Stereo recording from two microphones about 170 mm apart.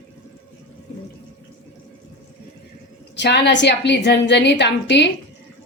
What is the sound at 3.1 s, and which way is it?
A woman's voice, 90° left.